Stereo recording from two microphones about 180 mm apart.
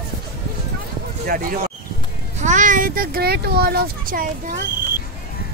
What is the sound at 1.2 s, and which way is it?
A child's voice, 50° right (ahead or behind).